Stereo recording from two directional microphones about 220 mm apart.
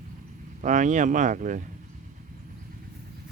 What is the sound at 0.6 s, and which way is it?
Speech, 35° right (ahead or behind).